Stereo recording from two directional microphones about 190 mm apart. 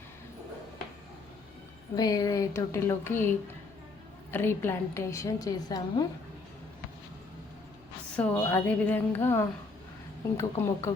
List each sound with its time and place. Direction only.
2.0 s a woman's voice: 20° left (ahead or behind)
8.1 s a woman's voice: 10° left (ahead or behind)